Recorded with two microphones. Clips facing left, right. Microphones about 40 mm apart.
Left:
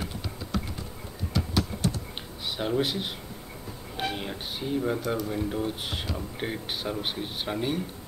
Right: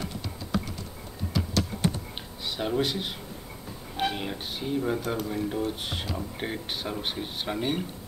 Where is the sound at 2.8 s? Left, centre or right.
Centre.